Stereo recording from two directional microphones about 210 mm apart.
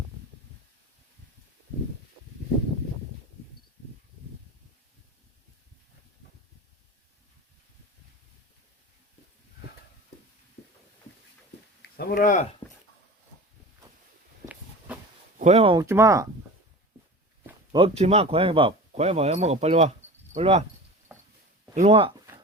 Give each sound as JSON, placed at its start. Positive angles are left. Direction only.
{"t": 11.8, "sound": "speech", "side_deg": 45}
{"t": 14.4, "sound": "a sound", "side_deg": -5}
{"t": 15.4, "sound": "speech", "side_deg": -30}
{"t": 17.7, "sound": "speech", "side_deg": -25}
{"t": 21.8, "sound": "speech", "side_deg": -25}